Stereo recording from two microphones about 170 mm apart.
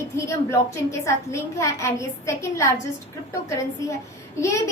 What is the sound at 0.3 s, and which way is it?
A woman's voice, 15° left (ahead or behind).